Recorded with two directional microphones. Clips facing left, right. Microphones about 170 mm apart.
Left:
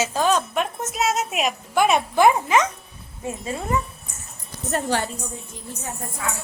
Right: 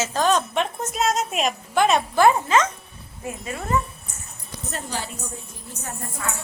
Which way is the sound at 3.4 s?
25° left (ahead or behind).